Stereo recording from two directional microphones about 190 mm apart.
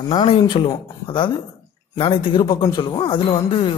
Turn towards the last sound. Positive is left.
turn(degrees=25)  # may be behind; listen again after turning